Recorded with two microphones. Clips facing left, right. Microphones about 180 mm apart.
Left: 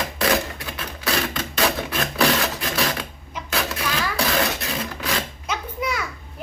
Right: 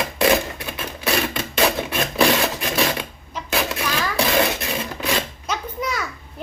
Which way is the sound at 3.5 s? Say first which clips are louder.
Right 2 dB; 20° right (ahead or behind).